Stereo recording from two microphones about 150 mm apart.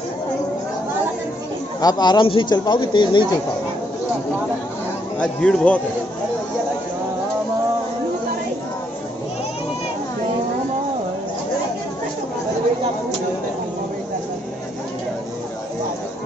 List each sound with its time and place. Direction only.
1.8 s speech: 25° left (ahead or behind)
5.2 s speech: 5° left (ahead or behind)